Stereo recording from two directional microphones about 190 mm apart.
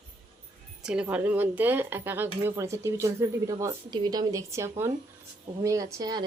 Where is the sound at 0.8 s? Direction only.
5° right (ahead or behind).